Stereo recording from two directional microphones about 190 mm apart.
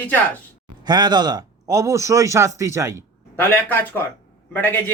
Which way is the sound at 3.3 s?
10° left (ahead or behind).